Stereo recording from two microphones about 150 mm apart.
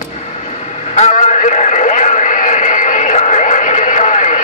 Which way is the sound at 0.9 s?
50° left (ahead or behind).